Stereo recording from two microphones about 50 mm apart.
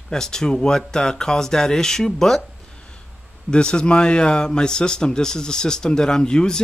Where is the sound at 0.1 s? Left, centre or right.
Centre.